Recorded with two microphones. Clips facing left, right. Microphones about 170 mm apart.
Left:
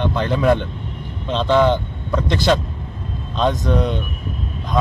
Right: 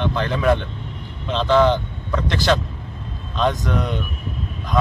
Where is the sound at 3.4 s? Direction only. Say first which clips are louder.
Left 3 dB; 20° left (ahead or behind).